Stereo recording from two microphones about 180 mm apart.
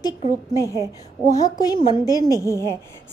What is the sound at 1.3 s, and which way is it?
A woman's voice, 20° left (ahead or behind).